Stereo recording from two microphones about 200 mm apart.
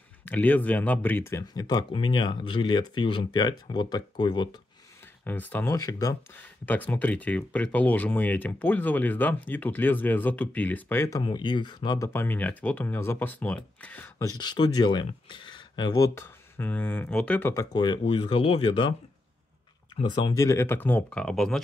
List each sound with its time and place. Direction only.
0.2 s speech: 10° left (ahead or behind)
5.2 s speech: 10° left (ahead or behind); by 18.9 s 25° left (ahead or behind)
20.0 s speech: 20° left (ahead or behind); by 21.5 s 5° left (ahead or behind)